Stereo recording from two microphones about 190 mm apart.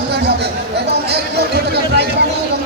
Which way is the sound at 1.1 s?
60° right (ahead or behind).